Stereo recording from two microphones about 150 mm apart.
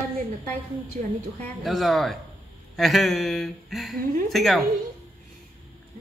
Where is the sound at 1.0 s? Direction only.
55° right (ahead or behind).